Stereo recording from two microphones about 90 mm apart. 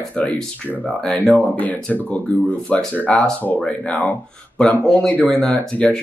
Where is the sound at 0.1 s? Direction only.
15° left (ahead or behind).